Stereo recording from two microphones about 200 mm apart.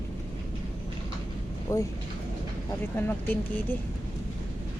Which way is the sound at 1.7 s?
15° left (ahead or behind).